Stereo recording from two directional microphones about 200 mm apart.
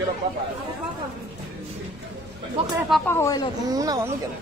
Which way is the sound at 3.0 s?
15° left (ahead or behind).